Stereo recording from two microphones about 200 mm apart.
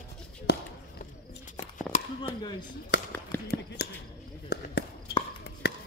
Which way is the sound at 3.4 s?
50° left (ahead or behind).